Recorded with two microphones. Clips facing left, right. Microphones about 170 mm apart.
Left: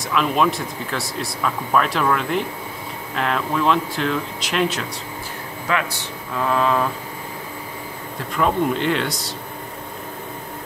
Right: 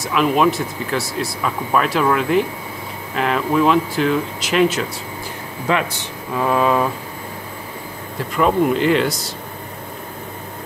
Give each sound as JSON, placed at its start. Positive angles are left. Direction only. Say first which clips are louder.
{"t": 0.0, "sound": "speech", "louder": "right 3 dB", "side_deg": -5}
{"t": 5.7, "sound": "a man's voice", "louder": "right 4 dB", "side_deg": -20}
{"t": 6.4, "sound": "a sound", "louder": "right 3 dB", "side_deg": -10}
{"t": 8.4, "sound": "speech", "louder": "right 4 dB", "side_deg": -5}